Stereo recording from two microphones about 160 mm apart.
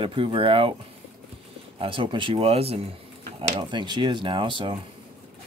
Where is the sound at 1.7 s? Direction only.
35° right (ahead or behind).